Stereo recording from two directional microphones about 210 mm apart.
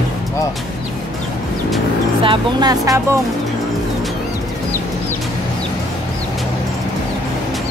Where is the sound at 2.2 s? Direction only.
20° right (ahead or behind).